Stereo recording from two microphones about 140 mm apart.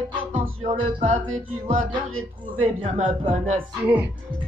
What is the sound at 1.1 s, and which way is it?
Speech, 65° right (ahead or behind).